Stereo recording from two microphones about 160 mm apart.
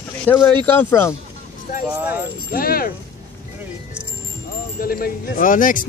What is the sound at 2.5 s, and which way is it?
Speech, 65° left (ahead or behind).